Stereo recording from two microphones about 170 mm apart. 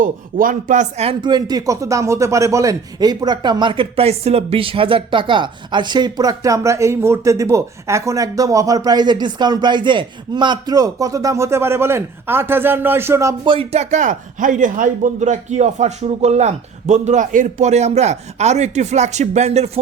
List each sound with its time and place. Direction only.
0.0 s speech: 55° right (ahead or behind)
1.2 s speech: 25° right (ahead or behind)